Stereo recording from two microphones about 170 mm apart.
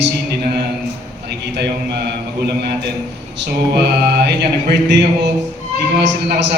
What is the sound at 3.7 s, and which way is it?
Mantra, 70° right (ahead or behind).